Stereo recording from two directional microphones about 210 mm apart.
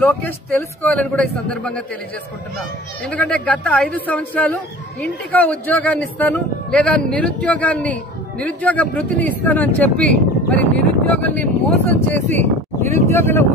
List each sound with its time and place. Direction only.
0.0 s a man's voice: 10° left (ahead or behind)
3.1 s speech: 5° left (ahead or behind)